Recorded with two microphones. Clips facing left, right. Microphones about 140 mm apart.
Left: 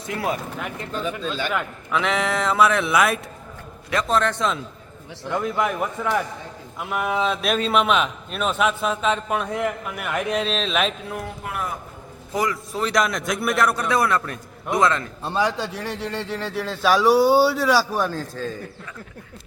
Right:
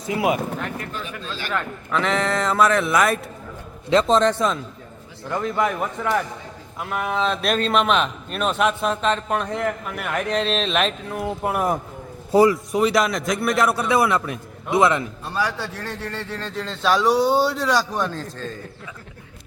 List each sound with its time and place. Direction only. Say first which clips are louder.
0.0 s a man's voice: right 4 dB; 10° right (ahead or behind)
0.8 s a man's voice: left 4 dB; 25° left (ahead or behind)
1.5 s a man's voice: right 1 dB; 5° left (ahead or behind)
3.8 s a man's voice: right 5 dB; 25° right (ahead or behind)
4.4 s a man's voice: right 2 dB; centre (ahead or behind)
11.4 s a man's voice: right 9 dB; 45° right (ahead or behind)
12.3 s a man's voice: right 9 dB; 30° right (ahead or behind)
12.7 s a man's voice: right 3 dB; 5° right (ahead or behind)
15.2 s a man's voice: left 3 dB; 25° left (ahead or behind); by 18.5 s 5° left (ahead or behind)